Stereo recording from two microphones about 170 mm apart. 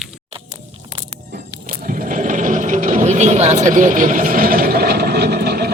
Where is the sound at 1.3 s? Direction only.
55° right (ahead or behind).